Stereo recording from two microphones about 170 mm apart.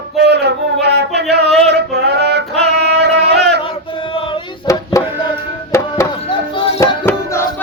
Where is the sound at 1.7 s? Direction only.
75° right (ahead or behind).